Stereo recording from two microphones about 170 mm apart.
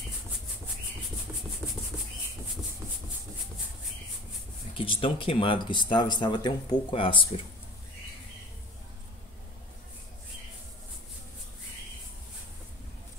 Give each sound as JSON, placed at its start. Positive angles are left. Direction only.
{"t": 4.7, "sound": "speech", "side_deg": 30}